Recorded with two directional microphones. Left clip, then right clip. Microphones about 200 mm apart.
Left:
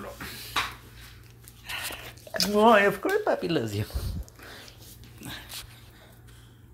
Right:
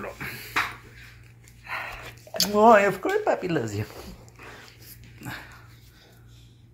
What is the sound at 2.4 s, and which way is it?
Speech, 15° left (ahead or behind).